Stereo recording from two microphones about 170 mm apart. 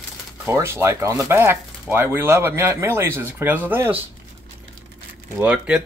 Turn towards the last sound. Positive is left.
turn(degrees=-5)  # may be behind; listen again after turning